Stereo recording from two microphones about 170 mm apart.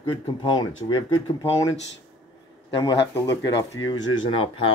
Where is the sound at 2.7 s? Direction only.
25° left (ahead or behind).